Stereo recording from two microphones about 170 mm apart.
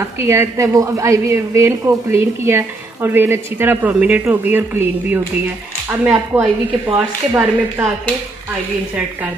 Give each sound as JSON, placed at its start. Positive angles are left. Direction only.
{"t": 0.0, "sound": "speech", "side_deg": -15}